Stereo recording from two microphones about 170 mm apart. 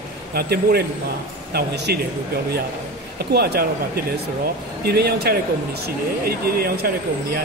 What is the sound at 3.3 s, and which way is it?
Speech, 70° right (ahead or behind).